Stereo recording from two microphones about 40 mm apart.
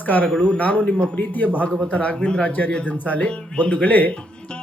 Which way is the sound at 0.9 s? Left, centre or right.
Left.